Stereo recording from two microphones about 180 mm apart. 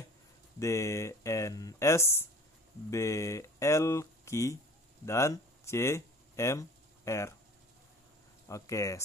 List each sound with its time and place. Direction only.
0.6 s speech: 15° left (ahead or behind)
8.5 s speech: 15° left (ahead or behind)